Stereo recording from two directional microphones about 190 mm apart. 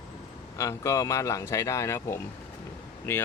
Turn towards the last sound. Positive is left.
turn(degrees=15)  # may be behind; listen again after turning